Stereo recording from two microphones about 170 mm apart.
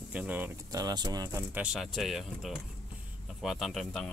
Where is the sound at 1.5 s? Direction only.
5° right (ahead or behind).